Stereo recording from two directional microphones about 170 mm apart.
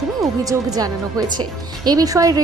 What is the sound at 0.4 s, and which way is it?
A woman's voice, 20° right (ahead or behind).